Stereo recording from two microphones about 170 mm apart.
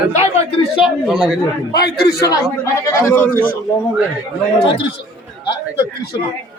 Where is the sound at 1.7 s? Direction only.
70° left (ahead or behind).